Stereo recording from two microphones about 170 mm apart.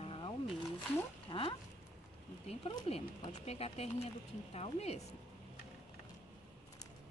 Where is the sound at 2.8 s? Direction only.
35° left (ahead or behind).